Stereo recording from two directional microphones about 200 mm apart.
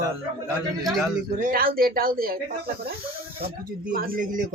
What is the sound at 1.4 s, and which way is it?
Speech, 45° right (ahead or behind).